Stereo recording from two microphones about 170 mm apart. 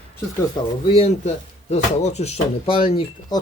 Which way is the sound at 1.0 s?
40° left (ahead or behind).